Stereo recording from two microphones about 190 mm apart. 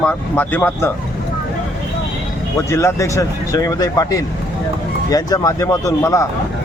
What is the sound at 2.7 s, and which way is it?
Speech, 15° left (ahead or behind).